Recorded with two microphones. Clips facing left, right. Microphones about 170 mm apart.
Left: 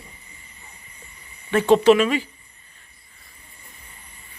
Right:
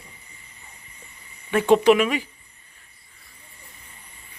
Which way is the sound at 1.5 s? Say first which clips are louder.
Left 1 dB; 15° right (ahead or behind).